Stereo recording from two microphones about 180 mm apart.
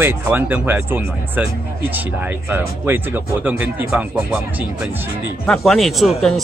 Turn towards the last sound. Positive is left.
turn(degrees=0)  # may be behind; listen again after turning